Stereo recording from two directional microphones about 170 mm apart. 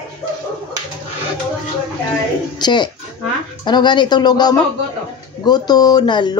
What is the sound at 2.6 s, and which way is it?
Speech, 25° left (ahead or behind).